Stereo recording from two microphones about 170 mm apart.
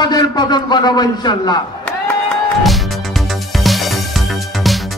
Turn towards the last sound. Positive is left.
turn(degrees=0)  # may be behind; listen again after turning